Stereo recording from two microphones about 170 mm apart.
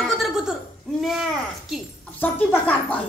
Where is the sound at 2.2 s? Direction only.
10° left (ahead or behind).